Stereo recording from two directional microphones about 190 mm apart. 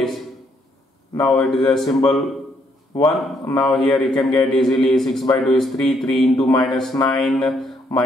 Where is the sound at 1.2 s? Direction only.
Centre (ahead or behind).